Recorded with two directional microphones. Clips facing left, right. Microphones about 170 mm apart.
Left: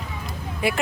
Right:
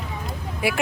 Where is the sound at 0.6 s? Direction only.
10° right (ahead or behind).